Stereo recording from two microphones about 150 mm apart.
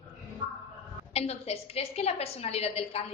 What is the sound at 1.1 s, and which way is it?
A woman's voice, 45° left (ahead or behind).